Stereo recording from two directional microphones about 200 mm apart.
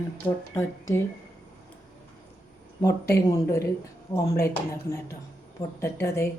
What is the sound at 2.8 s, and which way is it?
Speech, 15° left (ahead or behind).